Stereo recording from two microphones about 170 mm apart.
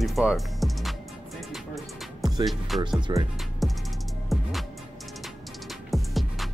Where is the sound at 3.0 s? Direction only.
25° right (ahead or behind).